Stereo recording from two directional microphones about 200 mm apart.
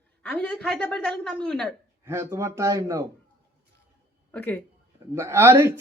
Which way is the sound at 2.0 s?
15° right (ahead or behind).